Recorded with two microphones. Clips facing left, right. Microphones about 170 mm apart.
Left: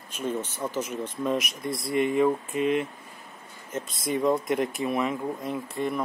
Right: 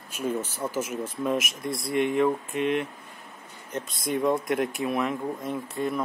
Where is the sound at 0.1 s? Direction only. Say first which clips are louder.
Right 1 dB; 10° right (ahead or behind).